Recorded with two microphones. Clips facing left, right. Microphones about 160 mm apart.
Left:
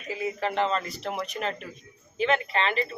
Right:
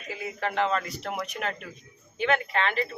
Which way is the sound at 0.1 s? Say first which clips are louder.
Left 3 dB; centre (ahead or behind).